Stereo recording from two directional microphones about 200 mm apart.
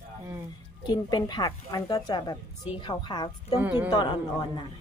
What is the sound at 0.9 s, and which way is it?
Speech, 20° left (ahead or behind).